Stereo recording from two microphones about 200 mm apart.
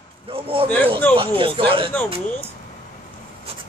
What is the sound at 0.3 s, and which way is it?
Speech, 25° right (ahead or behind).